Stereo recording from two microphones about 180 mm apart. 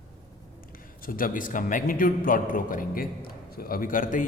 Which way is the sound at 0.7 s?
50° left (ahead or behind).